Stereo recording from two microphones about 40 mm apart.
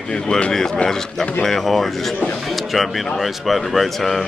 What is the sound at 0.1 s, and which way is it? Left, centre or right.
A man's voice, centre.